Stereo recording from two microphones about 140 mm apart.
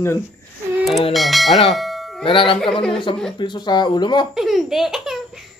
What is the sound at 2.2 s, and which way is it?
Speech, 40° left (ahead or behind).